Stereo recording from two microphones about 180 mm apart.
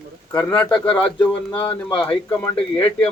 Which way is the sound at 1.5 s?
30° left (ahead or behind).